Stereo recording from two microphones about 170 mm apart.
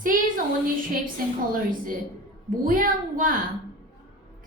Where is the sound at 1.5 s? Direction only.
55° right (ahead or behind).